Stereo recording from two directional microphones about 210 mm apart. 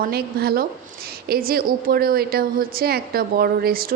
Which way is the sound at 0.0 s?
45° right (ahead or behind).